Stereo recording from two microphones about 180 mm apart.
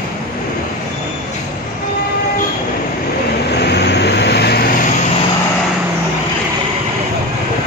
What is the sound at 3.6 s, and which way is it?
Vehicle, 70° left (ahead or behind).